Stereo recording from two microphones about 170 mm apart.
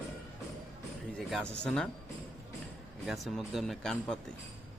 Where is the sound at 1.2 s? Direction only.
Centre (ahead or behind).